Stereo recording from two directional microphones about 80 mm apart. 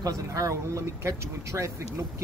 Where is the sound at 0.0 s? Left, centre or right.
Right.